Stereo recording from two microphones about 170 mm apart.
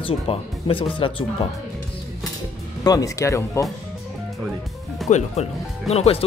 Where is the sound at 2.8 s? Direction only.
20° left (ahead or behind).